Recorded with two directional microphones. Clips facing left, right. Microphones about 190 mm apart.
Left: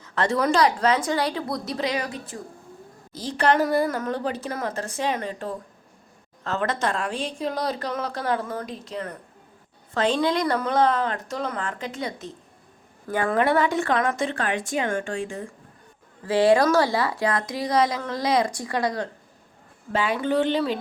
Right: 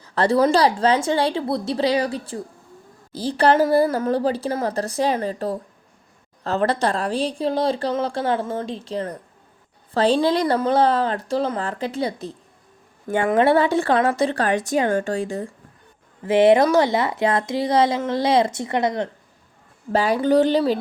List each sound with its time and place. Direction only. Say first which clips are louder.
0.0 s speech: right 6 dB; 35° right (ahead or behind)
16.2 s speech: right 4 dB; 20° right (ahead or behind)
19.9 s speech: right 6 dB; 40° right (ahead or behind)